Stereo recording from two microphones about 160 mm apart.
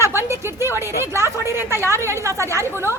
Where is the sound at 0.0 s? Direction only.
15° right (ahead or behind).